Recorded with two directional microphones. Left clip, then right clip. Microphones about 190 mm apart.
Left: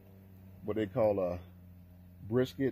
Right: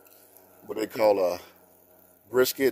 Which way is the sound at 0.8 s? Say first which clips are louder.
Right 8 dB; 10° right (ahead or behind).